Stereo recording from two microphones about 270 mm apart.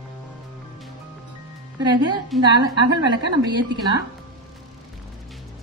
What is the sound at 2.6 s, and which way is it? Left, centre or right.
Speech, centre.